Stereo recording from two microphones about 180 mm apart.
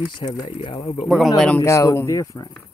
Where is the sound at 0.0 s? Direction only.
25° left (ahead or behind).